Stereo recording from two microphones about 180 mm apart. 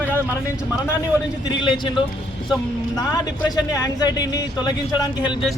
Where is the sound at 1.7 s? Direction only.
25° left (ahead or behind).